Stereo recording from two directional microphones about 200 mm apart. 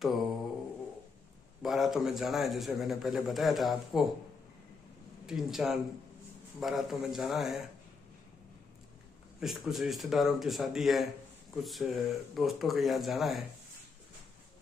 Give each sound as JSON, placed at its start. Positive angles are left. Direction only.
{"t": 0.0, "sound": "a man's voice", "side_deg": 0}
{"t": 1.6, "sound": "a man's voice", "side_deg": 0}
{"t": 5.2, "sound": "a man's voice", "side_deg": 0}
{"t": 9.4, "sound": "a man's voice", "side_deg": 0}